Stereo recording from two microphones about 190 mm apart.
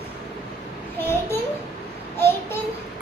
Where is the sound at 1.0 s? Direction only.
10° left (ahead or behind).